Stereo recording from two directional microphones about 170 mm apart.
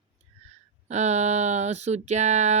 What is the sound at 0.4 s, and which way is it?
Speech, 40° right (ahead or behind).